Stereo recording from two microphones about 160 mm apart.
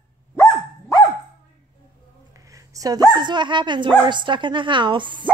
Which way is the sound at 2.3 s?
20° right (ahead or behind).